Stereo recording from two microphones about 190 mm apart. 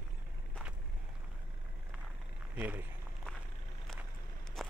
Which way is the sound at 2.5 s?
10° right (ahead or behind).